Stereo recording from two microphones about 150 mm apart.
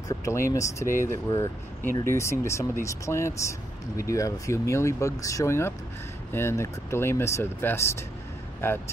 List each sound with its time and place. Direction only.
0.1 s speech: 20° left (ahead or behind)